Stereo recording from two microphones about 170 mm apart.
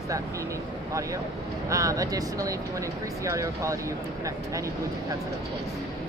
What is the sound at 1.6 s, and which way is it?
Speech, 20° right (ahead or behind).